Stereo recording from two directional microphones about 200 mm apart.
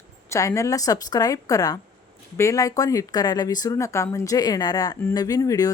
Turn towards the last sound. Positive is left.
turn(degrees=15)  # may be behind; listen again after turning